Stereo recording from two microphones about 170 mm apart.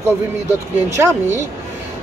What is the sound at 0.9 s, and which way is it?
Speech, 15° right (ahead or behind).